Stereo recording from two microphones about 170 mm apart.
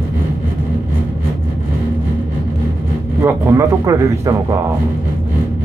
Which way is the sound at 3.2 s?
15° right (ahead or behind).